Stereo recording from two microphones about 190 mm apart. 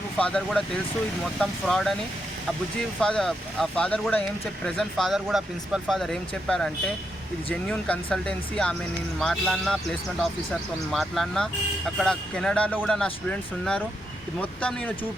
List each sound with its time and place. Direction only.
0.2 s speech: 5° left (ahead or behind)
3.0 s speech: 5° left (ahead or behind)